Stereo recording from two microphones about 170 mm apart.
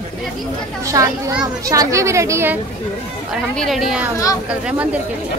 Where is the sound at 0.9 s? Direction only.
20° right (ahead or behind).